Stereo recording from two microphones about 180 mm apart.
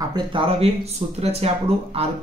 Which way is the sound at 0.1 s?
30° right (ahead or behind).